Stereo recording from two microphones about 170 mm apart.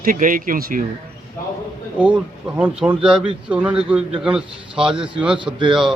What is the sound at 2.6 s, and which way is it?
A man's voice, 5° right (ahead or behind).